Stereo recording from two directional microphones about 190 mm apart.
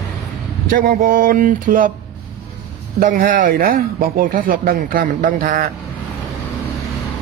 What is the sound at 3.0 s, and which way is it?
Speech, 45° right (ahead or behind).